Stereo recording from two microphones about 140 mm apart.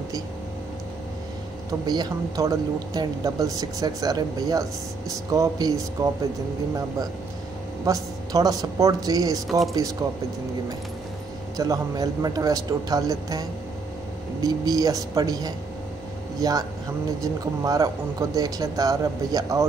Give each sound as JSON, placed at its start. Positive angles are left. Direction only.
{"t": 1.7, "sound": "speech", "side_deg": -30}
{"t": 7.8, "sound": "speech", "side_deg": -25}
{"t": 11.5, "sound": "speech", "side_deg": -25}